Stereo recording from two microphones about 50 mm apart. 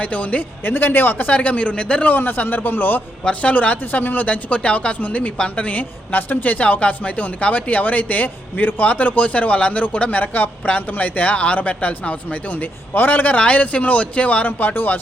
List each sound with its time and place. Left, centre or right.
0.0 s speech: left
0.6 s speech: left
1.3 s speech: left
2.0 s speech: left
3.2 s speech: left
13.4 s speech: left